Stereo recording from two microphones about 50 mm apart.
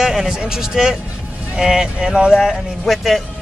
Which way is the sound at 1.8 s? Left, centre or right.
Centre.